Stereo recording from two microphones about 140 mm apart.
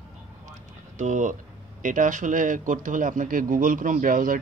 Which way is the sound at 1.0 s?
60° right (ahead or behind).